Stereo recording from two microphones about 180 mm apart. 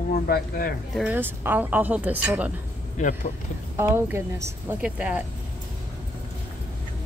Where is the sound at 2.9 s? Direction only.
45° left (ahead or behind).